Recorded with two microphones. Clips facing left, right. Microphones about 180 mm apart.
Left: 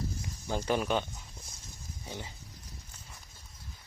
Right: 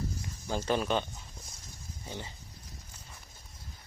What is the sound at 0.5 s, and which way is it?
Speech, 10° left (ahead or behind).